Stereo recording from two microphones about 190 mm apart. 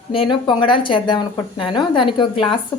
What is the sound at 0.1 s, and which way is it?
A woman's voice, 25° left (ahead or behind).